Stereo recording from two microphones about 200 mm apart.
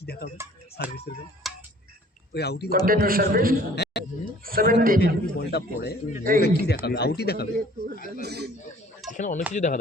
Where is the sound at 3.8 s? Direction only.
50° left (ahead or behind).